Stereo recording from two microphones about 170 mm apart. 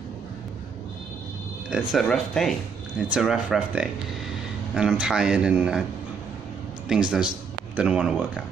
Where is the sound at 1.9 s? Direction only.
Centre (ahead or behind).